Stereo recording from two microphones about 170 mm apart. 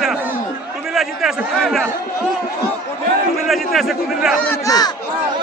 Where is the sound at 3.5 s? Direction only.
Centre (ahead or behind).